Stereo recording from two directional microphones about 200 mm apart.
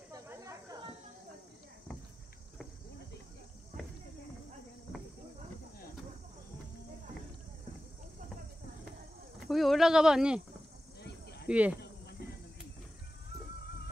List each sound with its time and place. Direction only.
0.1 s snake: 15° right (ahead or behind)
9.5 s speech: centre (ahead or behind)
11.4 s speech: 5° right (ahead or behind)